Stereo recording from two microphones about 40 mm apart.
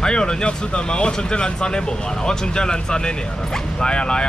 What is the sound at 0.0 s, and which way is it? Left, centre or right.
Speech, centre.